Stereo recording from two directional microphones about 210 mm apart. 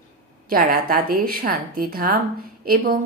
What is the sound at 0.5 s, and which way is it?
A woman's voice, 45° right (ahead or behind).